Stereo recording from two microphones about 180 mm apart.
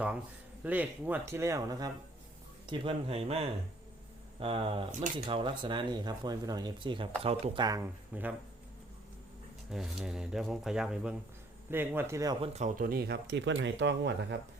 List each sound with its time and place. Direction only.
0.6 s speech: 10° right (ahead or behind)
8.1 s speech: 10° right (ahead or behind)
9.6 s speech: centre (ahead or behind); by 12.4 s 20° right (ahead or behind)
12.4 s speech: 40° right (ahead or behind); by 14.3 s 75° right (ahead or behind)